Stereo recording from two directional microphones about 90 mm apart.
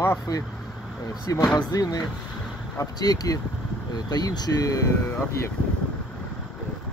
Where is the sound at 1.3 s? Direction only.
40° left (ahead or behind).